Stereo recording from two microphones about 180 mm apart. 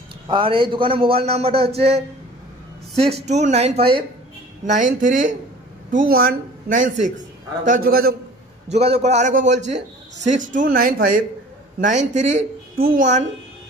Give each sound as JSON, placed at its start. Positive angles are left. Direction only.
{"t": 0.3, "sound": "a man's voice", "side_deg": -30}
{"t": 4.6, "sound": "a man's voice", "side_deg": -45}
{"t": 8.6, "sound": "a man's voice", "side_deg": -35}